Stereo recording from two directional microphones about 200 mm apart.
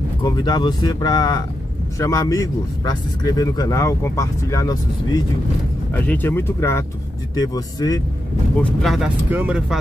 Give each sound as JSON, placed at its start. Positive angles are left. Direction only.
{"t": 0.2, "sound": "speech", "side_deg": 20}
{"t": 8.5, "sound": "speech", "side_deg": 5}